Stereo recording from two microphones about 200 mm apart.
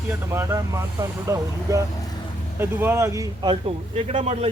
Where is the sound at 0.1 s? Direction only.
15° right (ahead or behind).